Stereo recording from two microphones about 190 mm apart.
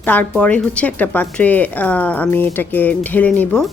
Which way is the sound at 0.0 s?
10° left (ahead or behind).